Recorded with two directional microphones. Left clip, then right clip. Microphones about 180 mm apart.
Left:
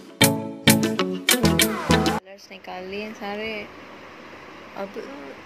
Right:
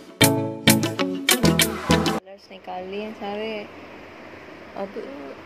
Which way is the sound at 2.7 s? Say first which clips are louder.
Right 2 dB; 5° left (ahead or behind).